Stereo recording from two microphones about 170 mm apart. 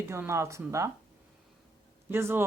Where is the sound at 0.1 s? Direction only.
15° right (ahead or behind).